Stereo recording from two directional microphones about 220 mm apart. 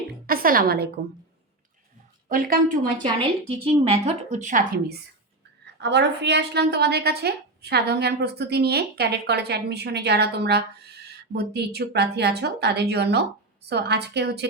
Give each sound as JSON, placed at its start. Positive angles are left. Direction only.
{"t": 0.3, "sound": "a woman's voice", "side_deg": -40}
{"t": 2.3, "sound": "a woman's voice", "side_deg": -40}
{"t": 3.0, "sound": "a woman's voice", "side_deg": -25}
{"t": 5.8, "sound": "a woman's voice", "side_deg": -50}